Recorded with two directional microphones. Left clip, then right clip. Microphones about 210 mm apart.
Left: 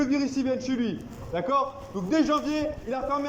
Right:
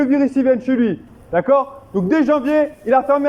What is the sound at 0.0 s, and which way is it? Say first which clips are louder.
A man's voice: right 11 dB; 45° right (ahead or behind).